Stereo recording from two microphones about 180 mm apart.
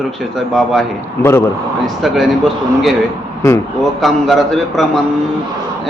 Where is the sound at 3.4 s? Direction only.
15° left (ahead or behind).